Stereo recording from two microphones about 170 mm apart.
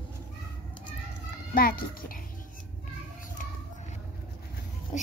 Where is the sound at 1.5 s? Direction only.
55° left (ahead or behind).